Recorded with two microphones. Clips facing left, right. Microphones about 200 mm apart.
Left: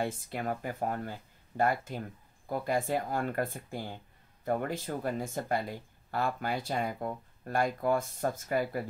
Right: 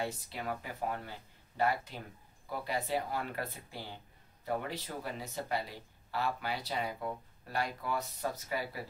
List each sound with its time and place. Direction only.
0.0 s speech: 50° left (ahead or behind)